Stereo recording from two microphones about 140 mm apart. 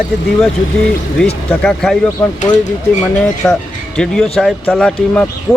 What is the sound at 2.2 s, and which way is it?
Speech, 20° left (ahead or behind).